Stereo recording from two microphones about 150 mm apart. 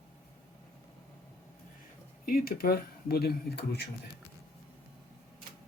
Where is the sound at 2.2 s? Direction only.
80° left.